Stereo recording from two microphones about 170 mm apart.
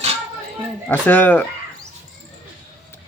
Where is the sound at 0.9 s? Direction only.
10° left (ahead or behind).